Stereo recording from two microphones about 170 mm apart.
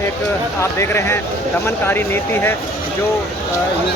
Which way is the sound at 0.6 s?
15° left (ahead or behind).